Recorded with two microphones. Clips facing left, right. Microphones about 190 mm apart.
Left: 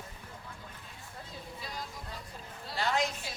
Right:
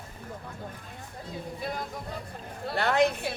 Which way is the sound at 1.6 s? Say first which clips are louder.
Right 8 dB; 55° right (ahead or behind).